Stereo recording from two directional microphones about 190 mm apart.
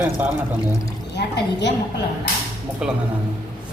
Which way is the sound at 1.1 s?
65° left (ahead or behind).